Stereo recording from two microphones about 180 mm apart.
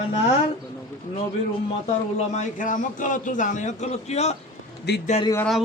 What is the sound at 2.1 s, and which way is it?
A man's voice, 45° left (ahead or behind).